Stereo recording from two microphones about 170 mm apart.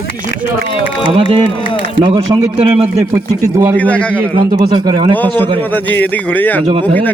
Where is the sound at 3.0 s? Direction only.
15° right (ahead or behind).